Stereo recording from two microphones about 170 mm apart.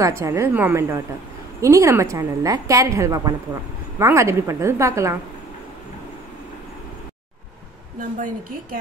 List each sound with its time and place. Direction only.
0.0 s a woman's voice: 15° right (ahead or behind)